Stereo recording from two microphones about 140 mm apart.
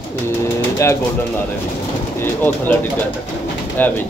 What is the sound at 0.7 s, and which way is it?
Speech, 20° left (ahead or behind).